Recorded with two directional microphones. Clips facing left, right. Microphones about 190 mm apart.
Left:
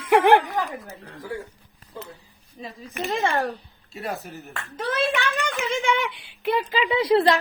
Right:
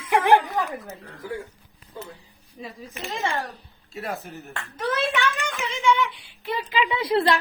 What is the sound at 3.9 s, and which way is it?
Speech, centre (ahead or behind).